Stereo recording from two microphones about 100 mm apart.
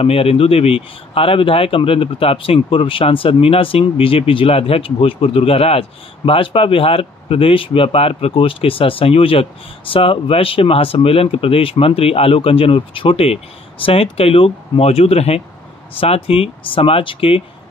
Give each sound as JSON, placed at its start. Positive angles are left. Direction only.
{"t": 0.0, "sound": "speech", "side_deg": 75}
{"t": 16.3, "sound": "speech", "side_deg": 65}